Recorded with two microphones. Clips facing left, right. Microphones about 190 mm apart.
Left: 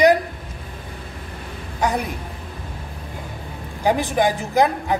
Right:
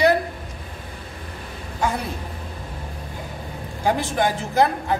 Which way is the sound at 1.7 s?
15° left (ahead or behind).